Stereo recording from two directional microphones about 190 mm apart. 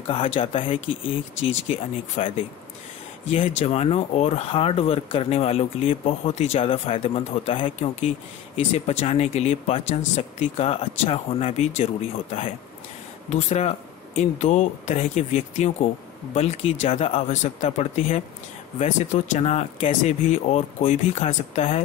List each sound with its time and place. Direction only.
0.0 s speech: 30° left (ahead or behind)